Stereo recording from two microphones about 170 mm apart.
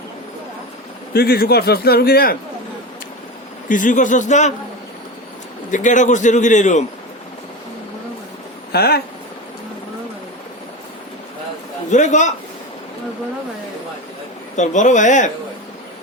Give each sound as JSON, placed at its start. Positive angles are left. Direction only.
{"t": 1.1, "sound": "a man's voice", "side_deg": 65}
{"t": 3.7, "sound": "a man's voice", "side_deg": 50}
{"t": 5.7, "sound": "a man's voice", "side_deg": 45}
{"t": 8.7, "sound": "speech", "side_deg": 70}
{"t": 11.9, "sound": "a man's voice", "side_deg": 45}
{"t": 14.5, "sound": "a man's voice", "side_deg": 45}